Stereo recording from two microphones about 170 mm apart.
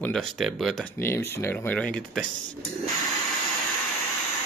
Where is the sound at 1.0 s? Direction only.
15° left (ahead or behind).